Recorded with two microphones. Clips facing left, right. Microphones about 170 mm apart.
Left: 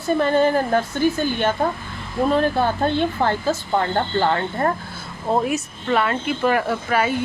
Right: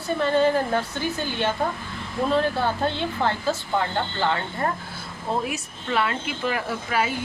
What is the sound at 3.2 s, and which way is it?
Speech, 50° left (ahead or behind).